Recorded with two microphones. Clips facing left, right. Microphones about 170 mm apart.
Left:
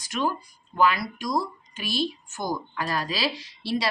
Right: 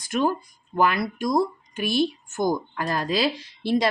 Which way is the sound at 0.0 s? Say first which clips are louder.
Right 5 dB; 50° right (ahead or behind).